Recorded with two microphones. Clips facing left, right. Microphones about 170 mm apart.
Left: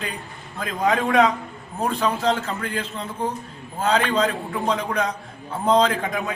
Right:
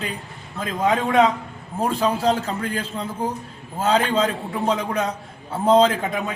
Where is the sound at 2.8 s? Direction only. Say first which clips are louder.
Right 1 dB; 10° right (ahead or behind).